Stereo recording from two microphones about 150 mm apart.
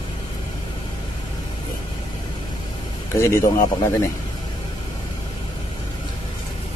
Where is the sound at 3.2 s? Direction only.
20° left (ahead or behind).